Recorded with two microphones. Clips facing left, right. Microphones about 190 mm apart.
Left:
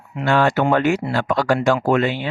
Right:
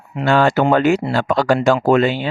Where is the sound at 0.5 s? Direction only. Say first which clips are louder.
Right 3 dB; 30° right (ahead or behind).